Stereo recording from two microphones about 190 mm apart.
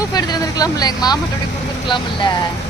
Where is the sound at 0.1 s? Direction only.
20° left (ahead or behind).